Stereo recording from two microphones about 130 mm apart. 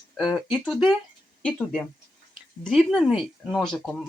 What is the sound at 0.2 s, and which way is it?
Speech, centre (ahead or behind).